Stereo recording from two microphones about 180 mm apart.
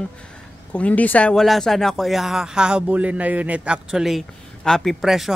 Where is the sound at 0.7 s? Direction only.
10° left (ahead or behind).